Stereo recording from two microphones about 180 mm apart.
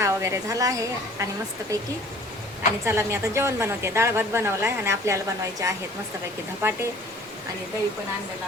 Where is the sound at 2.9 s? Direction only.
15° right (ahead or behind).